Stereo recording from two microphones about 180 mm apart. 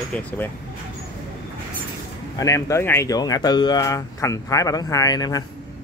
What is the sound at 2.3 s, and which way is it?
Speech, 15° left (ahead or behind).